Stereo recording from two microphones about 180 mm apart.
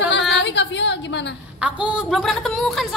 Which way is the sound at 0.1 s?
75° left (ahead or behind).